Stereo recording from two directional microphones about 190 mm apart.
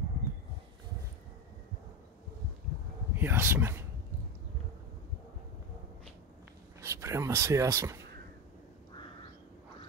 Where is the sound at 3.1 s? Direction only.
10° right (ahead or behind).